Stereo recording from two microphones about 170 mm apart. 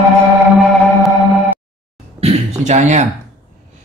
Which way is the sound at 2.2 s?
40° right (ahead or behind).